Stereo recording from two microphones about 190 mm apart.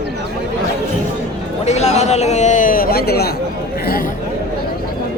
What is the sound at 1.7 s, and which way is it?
A man's voice, 35° left (ahead or behind).